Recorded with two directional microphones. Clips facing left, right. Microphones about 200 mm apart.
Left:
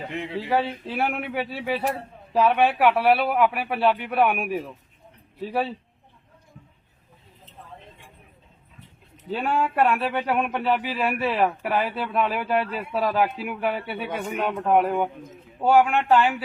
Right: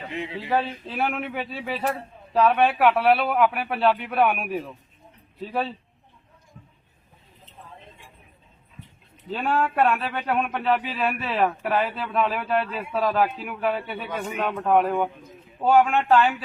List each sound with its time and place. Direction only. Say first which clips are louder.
0.5 s a man's voice: left 1 dB; 5° left (ahead or behind)
9.1 s a man's voice: even; 5° left (ahead or behind)